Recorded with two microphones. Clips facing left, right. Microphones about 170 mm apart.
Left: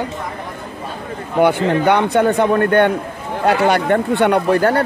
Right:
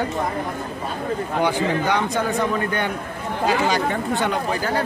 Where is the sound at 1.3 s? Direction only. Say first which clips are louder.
Left 8 dB; 60° left (ahead or behind).